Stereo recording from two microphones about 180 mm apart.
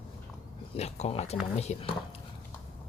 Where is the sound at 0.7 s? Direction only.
40° left (ahead or behind).